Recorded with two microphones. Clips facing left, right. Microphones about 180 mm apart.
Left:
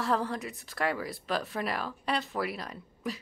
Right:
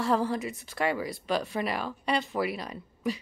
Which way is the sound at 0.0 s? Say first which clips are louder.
Right 3 dB; centre (ahead or behind).